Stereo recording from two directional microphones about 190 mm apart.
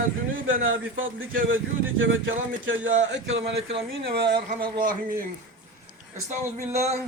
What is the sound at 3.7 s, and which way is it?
Speech, 60° right (ahead or behind).